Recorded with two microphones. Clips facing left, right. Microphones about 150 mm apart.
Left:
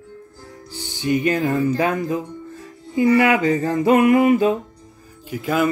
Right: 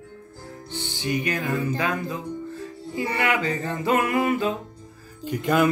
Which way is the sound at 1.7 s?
20° left (ahead or behind).